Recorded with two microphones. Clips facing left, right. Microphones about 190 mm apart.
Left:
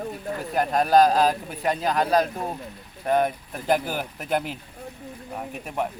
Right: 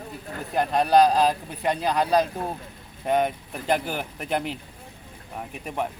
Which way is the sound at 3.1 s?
Centre (ahead or behind).